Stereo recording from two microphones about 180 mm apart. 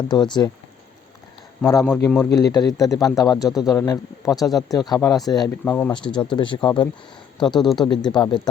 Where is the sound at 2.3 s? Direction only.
20° left (ahead or behind).